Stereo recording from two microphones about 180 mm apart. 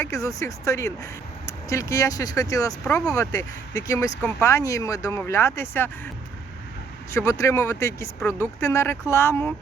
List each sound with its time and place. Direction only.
0.0 s speech: 15° left (ahead or behind)
7.1 s speech: 15° left (ahead or behind)